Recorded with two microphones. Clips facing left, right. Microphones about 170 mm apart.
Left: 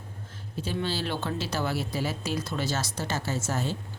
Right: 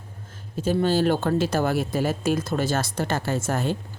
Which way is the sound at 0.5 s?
45° right (ahead or behind).